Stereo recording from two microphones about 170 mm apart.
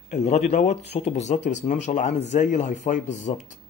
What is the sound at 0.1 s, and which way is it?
A man's voice, 40° left (ahead or behind).